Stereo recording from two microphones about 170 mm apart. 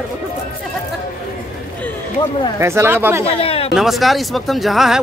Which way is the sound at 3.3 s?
35° left (ahead or behind).